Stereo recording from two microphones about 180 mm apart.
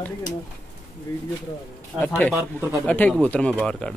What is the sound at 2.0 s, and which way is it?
Speech, 10° left (ahead or behind).